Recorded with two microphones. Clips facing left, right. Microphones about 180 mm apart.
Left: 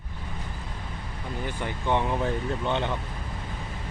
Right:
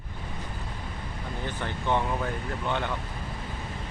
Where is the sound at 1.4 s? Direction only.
15° left (ahead or behind).